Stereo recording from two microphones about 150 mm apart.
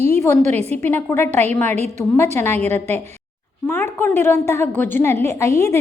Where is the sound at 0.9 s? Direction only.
15° left (ahead or behind).